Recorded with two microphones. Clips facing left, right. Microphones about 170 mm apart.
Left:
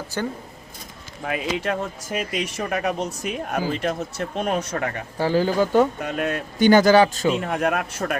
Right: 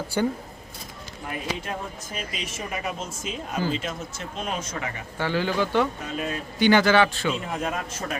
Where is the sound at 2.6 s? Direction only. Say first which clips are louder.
Left 6 dB; 65° left (ahead or behind).